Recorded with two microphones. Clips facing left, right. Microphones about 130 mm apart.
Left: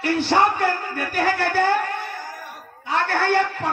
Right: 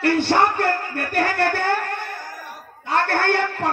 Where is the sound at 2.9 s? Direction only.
60° right (ahead or behind).